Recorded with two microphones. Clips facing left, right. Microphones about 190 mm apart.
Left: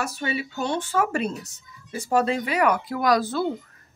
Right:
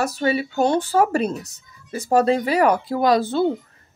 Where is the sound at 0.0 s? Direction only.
40° right (ahead or behind).